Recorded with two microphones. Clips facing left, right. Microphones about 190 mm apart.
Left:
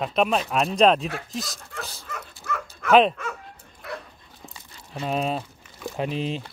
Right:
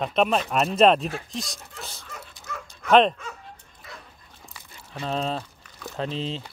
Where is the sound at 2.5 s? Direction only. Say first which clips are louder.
Left 7 dB; 65° left (ahead or behind).